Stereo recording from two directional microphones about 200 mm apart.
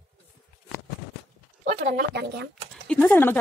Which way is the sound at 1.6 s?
35° right (ahead or behind).